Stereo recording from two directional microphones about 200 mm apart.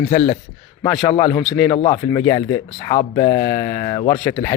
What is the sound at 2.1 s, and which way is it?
Speech, 15° left (ahead or behind).